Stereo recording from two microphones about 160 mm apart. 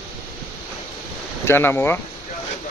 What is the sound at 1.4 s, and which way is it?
Speech, 15° left (ahead or behind).